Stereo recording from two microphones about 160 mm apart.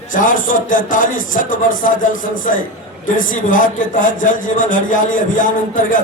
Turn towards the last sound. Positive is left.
turn(degrees=55)  # may be behind; listen again after turning